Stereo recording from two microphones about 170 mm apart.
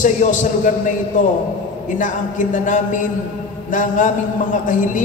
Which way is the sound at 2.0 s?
50° left (ahead or behind).